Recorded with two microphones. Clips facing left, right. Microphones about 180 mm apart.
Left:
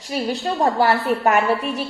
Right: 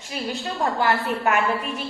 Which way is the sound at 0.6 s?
40° left (ahead or behind).